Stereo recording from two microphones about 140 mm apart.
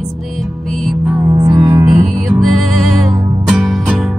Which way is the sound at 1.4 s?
25° right (ahead or behind).